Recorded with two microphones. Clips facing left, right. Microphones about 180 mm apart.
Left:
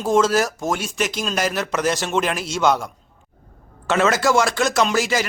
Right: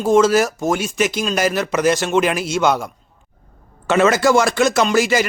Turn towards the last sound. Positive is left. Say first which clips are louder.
# right 4 dB
turn(degrees=0)  # may be behind; listen again after turning